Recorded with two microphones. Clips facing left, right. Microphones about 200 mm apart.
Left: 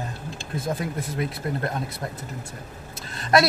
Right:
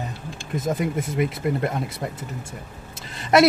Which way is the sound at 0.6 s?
20° right (ahead or behind).